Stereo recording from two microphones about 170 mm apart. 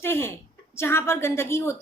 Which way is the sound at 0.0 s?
15° left (ahead or behind).